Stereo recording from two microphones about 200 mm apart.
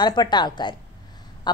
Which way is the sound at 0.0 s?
20° left (ahead or behind).